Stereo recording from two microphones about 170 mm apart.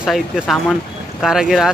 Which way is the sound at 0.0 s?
Centre (ahead or behind).